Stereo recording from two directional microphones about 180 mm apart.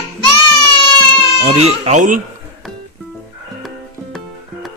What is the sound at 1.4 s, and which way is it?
Speech, 35° right (ahead or behind).